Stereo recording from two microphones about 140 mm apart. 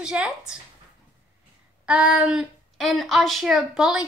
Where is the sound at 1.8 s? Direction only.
10° right (ahead or behind).